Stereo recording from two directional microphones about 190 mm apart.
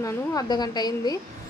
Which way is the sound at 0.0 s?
20° left (ahead or behind).